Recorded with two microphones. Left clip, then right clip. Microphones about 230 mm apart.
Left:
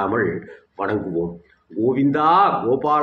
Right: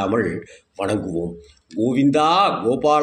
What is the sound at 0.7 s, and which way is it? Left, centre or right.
A man's voice, right.